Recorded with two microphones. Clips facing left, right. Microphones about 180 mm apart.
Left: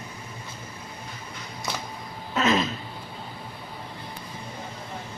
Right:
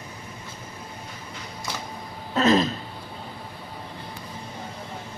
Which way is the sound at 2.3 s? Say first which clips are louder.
Right 4 dB; 35° right (ahead or behind).